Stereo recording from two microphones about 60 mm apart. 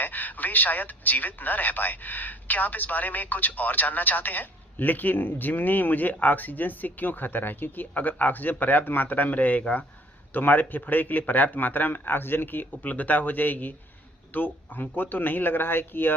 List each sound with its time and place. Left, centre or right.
0.0 s speech: left